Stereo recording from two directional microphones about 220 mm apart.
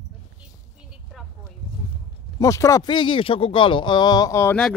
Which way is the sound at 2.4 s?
15° left (ahead or behind).